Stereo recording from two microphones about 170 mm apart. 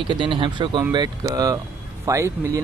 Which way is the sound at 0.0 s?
30° right (ahead or behind).